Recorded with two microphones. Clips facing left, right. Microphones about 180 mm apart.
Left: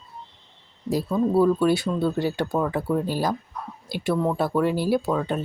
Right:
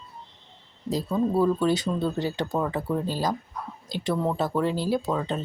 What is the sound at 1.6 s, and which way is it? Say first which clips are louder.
Speech: left 3 dB; 10° left (ahead or behind).